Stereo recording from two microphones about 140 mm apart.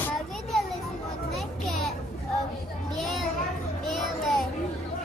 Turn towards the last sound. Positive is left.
turn(degrees=0)  # may be behind; listen again after turning